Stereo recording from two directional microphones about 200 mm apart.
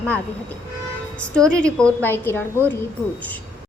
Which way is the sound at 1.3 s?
5° left (ahead or behind).